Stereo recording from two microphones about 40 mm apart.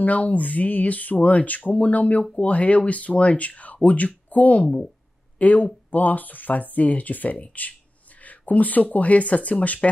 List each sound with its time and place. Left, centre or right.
0.0 s speech: left